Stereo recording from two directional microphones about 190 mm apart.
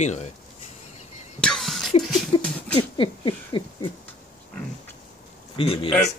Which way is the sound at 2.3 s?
25° left (ahead or behind).